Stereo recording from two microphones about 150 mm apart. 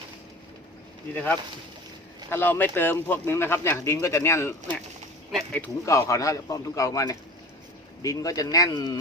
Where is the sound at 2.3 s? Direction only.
15° left (ahead or behind).